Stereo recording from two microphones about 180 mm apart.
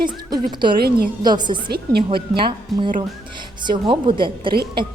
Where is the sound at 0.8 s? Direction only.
60° right (ahead or behind).